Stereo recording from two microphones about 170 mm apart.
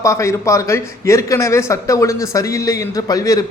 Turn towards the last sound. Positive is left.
turn(degrees=20)  # may be behind; listen again after turning